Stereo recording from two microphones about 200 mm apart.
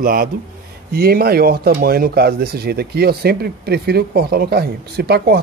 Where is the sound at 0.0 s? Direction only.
45° right (ahead or behind).